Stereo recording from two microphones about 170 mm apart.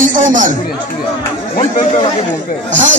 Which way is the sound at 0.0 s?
50° right (ahead or behind).